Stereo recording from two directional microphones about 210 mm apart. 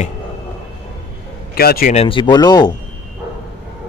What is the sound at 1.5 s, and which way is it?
Speech, 45° left (ahead or behind).